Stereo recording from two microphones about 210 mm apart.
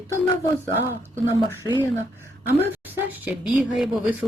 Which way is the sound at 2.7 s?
10° right (ahead or behind).